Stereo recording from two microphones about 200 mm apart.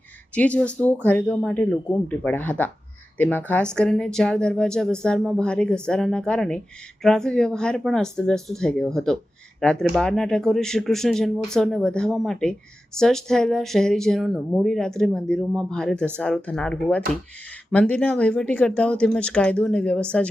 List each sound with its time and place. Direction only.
0.3 s a woman's voice: 5° left (ahead or behind)